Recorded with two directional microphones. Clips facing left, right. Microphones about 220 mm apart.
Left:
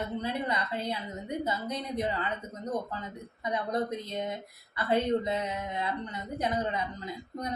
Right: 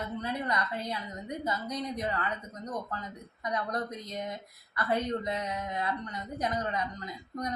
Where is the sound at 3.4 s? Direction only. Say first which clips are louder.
Left 3 dB; 25° left (ahead or behind).